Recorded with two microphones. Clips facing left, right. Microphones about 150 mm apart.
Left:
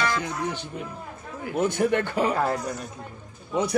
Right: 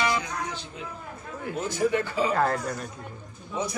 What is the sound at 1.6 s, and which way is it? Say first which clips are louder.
Speech: left 3 dB; 60° left (ahead or behind).